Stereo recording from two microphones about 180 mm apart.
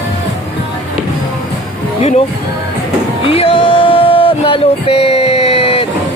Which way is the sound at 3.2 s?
30° left (ahead or behind).